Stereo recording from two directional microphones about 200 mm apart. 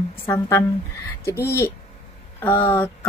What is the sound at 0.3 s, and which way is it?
A woman's voice, 15° left (ahead or behind).